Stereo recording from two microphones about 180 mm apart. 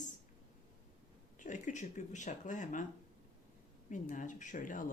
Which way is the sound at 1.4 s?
45° left (ahead or behind).